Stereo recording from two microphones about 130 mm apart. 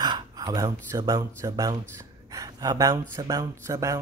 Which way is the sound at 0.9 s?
25° right (ahead or behind).